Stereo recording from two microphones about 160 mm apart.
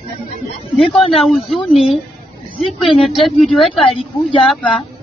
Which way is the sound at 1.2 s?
Centre (ahead or behind).